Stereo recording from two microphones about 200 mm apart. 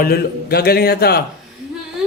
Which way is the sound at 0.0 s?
50° left (ahead or behind).